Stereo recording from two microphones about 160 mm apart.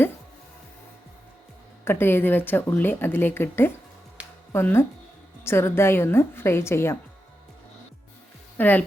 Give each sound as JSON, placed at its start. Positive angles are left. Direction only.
{"t": 1.8, "sound": "a woman's voice", "side_deg": 15}
{"t": 4.2, "sound": "music", "side_deg": -10}
{"t": 4.5, "sound": "a woman's voice", "side_deg": 15}
{"t": 8.5, "sound": "speech", "side_deg": 10}